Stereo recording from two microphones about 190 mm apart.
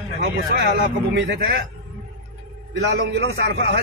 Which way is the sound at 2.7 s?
60° right (ahead or behind).